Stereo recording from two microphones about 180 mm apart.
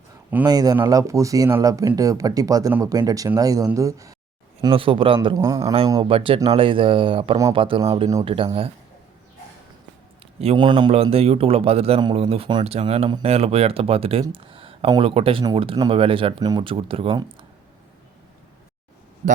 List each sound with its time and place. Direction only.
0.4 s speech: 20° right (ahead or behind)
4.6 s speech: 30° right (ahead or behind)
5.4 s speech: 15° right (ahead or behind)
5.9 s a man's voice: 30° right (ahead or behind)
10.4 s a man's voice: 30° right (ahead or behind)